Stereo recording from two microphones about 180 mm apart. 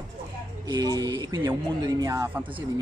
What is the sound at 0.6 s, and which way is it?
Speech, 20° right (ahead or behind).